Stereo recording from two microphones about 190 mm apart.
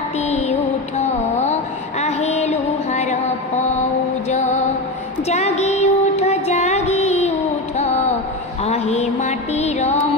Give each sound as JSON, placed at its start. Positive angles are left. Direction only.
{"t": 0.3, "sound": "music", "side_deg": 35}
{"t": 5.3, "sound": "child singing", "side_deg": 35}
{"t": 8.6, "sound": "music", "side_deg": 35}